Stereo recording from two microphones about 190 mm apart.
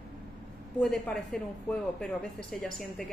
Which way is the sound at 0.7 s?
5° left (ahead or behind).